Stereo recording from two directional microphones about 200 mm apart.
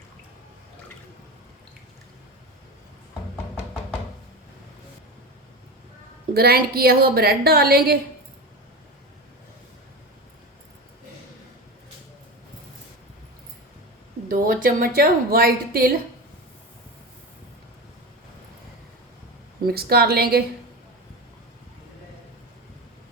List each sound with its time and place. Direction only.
6.3 s a woman's voice: 50° right (ahead or behind)
14.3 s a woman's voice: 45° right (ahead or behind)
19.6 s a woman's voice: 50° right (ahead or behind)